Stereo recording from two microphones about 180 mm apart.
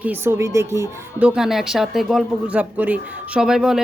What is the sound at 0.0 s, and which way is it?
A man's voice, 10° right (ahead or behind).